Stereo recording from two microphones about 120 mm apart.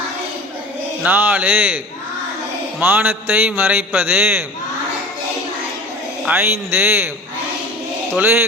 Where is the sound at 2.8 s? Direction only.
15° right (ahead or behind).